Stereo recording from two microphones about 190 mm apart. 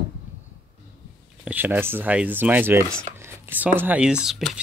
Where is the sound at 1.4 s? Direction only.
10° right (ahead or behind).